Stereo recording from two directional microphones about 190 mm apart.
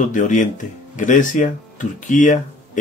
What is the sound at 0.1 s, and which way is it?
Speech, 40° left (ahead or behind).